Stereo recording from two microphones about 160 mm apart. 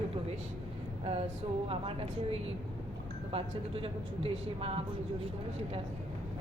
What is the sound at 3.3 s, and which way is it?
Speech, 35° right (ahead or behind).